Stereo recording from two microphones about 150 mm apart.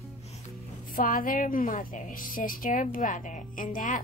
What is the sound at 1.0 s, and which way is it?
A woman's voice, 65° left (ahead or behind).